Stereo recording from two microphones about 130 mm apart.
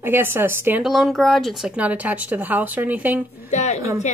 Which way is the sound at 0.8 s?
Centre (ahead or behind).